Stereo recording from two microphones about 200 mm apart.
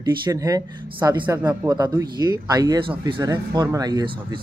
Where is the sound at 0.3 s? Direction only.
15° right (ahead or behind).